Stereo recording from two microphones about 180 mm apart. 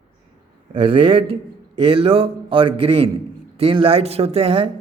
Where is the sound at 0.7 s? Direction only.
25° right (ahead or behind).